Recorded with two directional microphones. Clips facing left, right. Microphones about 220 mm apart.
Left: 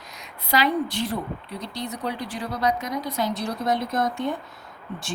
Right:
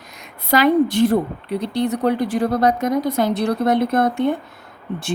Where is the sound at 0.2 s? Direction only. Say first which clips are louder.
Right 7 dB; 50° right (ahead or behind).